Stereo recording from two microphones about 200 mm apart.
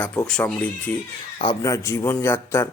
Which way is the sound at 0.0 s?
5° left (ahead or behind).